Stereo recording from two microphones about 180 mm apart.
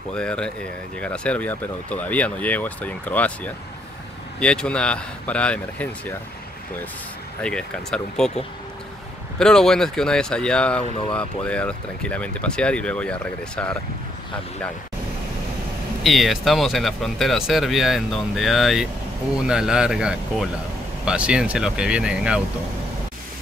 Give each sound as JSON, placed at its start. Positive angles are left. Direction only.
{"t": 0.1, "sound": "speech", "side_deg": 5}
{"t": 7.4, "sound": "speech", "side_deg": 5}
{"t": 9.4, "sound": "speech", "side_deg": 5}
{"t": 10.8, "sound": "speech", "side_deg": 30}
{"t": 11.1, "sound": "speech", "side_deg": 5}
{"t": 16.0, "sound": "speech", "side_deg": 0}